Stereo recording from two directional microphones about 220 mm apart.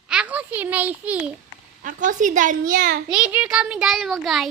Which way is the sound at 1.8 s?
35° right (ahead or behind).